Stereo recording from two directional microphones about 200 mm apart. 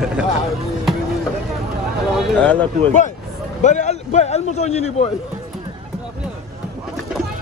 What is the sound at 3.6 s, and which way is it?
A man's voice, 35° left (ahead or behind).